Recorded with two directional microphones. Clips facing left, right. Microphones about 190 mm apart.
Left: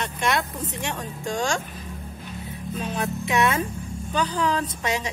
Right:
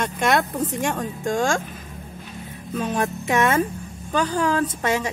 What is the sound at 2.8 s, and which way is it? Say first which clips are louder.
Speech: right 5 dB; 45° right (ahead or behind).